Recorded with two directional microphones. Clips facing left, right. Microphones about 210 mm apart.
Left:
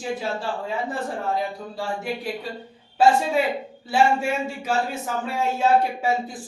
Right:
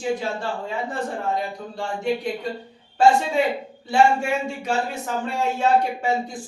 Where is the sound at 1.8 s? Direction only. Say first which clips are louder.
Right 4 dB; 5° left (ahead or behind).